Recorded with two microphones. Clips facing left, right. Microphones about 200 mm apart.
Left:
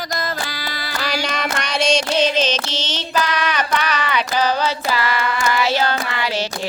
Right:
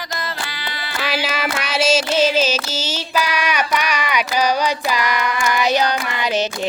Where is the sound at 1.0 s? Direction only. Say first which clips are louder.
Right 1 dB; 5° right (ahead or behind).